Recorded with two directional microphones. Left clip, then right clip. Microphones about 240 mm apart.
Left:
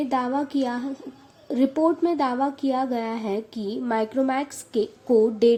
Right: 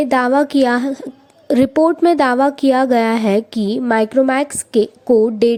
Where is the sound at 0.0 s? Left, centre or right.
Right.